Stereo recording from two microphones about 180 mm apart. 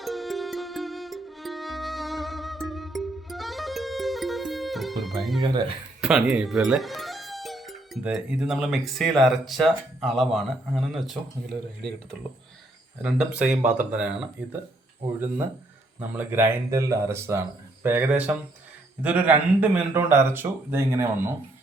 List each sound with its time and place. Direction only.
0.0 s music: centre (ahead or behind)
5.4 s speech: 25° right (ahead or behind)
6.0 s speech: 5° right (ahead or behind)
13.0 s a man's voice: 5° right (ahead or behind)
16.0 s a man's voice: 10° right (ahead or behind)